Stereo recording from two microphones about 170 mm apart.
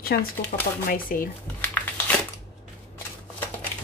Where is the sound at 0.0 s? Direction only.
60° left (ahead or behind).